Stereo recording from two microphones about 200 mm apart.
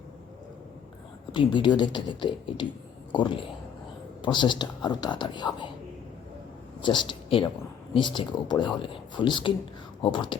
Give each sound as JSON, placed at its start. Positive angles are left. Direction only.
{"t": 1.3, "sound": "speech", "side_deg": 25}
{"t": 6.8, "sound": "speech", "side_deg": 25}